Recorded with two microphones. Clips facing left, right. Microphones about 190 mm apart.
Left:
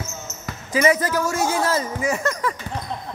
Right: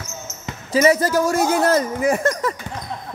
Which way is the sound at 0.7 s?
40° right (ahead or behind).